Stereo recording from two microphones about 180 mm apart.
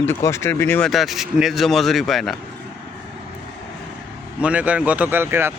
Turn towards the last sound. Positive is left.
turn(degrees=-10)  # may be behind; listen again after turning